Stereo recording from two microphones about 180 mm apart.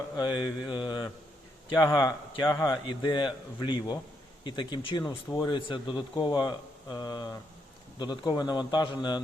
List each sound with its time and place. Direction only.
0.2 s speech: 25° left (ahead or behind)